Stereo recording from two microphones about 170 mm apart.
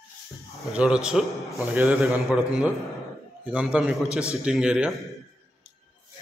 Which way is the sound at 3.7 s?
5° right (ahead or behind).